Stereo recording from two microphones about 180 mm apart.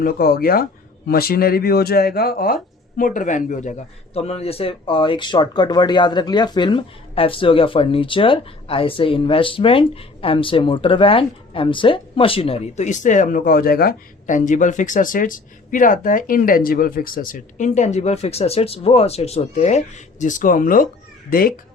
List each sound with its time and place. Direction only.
0.0 s a man's voice: 55° left (ahead or behind)